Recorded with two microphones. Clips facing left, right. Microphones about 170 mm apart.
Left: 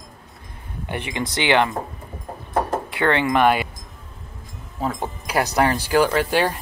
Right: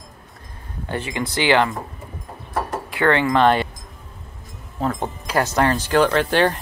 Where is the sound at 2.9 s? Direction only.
20° left (ahead or behind).